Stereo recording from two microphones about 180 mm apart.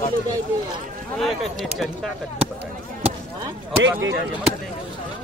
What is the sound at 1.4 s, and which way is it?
Speech, centre (ahead or behind).